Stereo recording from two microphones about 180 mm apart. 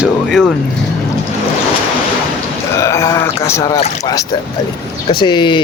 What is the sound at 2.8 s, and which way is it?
Sheep, 15° left (ahead or behind).